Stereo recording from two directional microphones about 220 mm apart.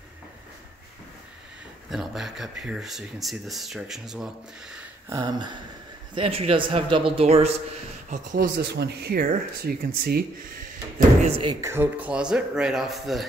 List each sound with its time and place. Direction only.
1.9 s speech: centre (ahead or behind)
5.1 s speech: 20° right (ahead or behind)
8.1 s speech: 40° right (ahead or behind)
11.6 s speech: 10° right (ahead or behind)